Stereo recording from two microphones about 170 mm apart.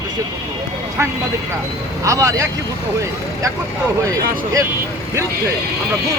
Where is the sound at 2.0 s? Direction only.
20° right (ahead or behind).